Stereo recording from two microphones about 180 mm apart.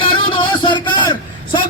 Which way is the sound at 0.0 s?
25° left (ahead or behind).